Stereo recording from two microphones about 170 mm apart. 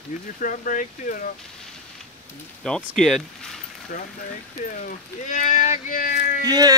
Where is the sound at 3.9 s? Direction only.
60° left (ahead or behind).